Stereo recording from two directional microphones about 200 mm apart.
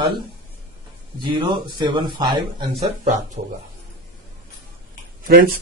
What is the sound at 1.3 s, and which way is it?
Speech, 20° right (ahead or behind).